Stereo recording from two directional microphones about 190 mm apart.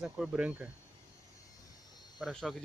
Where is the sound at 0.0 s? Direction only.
5° right (ahead or behind).